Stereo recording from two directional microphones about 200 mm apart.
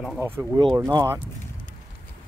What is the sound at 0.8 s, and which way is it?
Speech, 15° right (ahead or behind).